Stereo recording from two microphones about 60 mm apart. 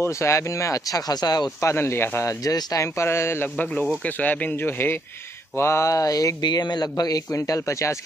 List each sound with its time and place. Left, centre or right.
0.0 s speech: left
1.7 s speech: left
2.4 s speech: left
4.0 s speech: left
5.6 s a sound: left
7.0 s a man's voice: left
7.3 s speech: left